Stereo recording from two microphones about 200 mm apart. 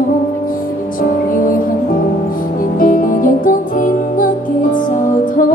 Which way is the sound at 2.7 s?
45° left (ahead or behind).